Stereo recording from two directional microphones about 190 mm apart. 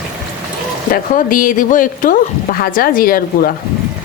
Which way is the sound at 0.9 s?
45° left (ahead or behind).